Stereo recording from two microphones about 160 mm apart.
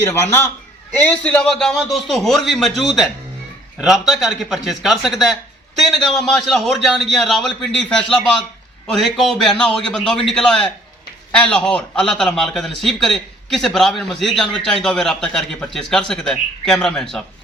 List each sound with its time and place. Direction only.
0.0 s a man's voice: 15° left (ahead or behind)